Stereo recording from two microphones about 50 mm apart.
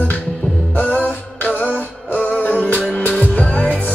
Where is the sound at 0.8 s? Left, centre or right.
Left.